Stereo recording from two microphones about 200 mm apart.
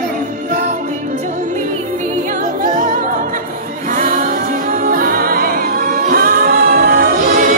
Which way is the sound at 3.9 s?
40° right (ahead or behind).